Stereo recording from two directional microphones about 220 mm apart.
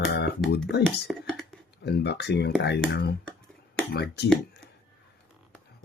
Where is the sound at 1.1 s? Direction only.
5° left (ahead or behind).